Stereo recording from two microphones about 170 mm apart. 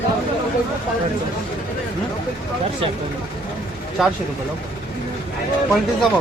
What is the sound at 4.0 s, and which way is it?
Speech, centre (ahead or behind).